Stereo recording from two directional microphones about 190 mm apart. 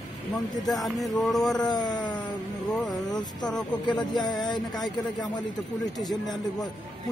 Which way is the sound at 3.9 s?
20° left (ahead or behind).